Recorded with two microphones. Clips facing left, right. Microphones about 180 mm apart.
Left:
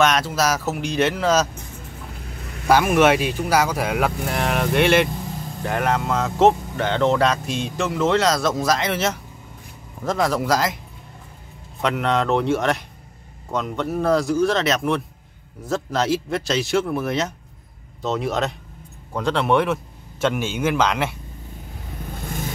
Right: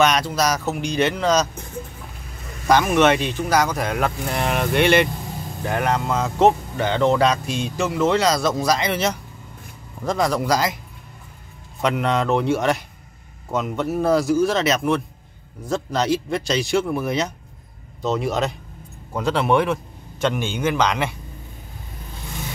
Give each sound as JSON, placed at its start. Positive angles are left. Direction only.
{"t": 0.0, "sound": "speech", "side_deg": 0}
{"t": 2.7, "sound": "speech", "side_deg": 5}
{"t": 11.8, "sound": "speech", "side_deg": 0}
{"t": 22.1, "sound": "vehicle", "side_deg": 55}